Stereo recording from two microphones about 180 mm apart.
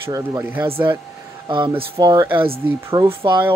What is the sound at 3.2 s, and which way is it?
Speech, 25° right (ahead or behind).